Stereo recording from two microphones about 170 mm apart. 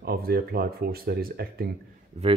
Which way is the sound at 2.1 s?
40° right (ahead or behind).